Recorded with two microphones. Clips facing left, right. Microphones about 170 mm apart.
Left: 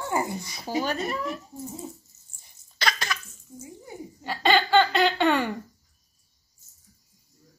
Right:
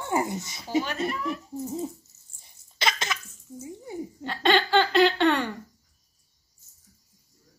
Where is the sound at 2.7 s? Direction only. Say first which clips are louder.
Even; 25° right (ahead or behind).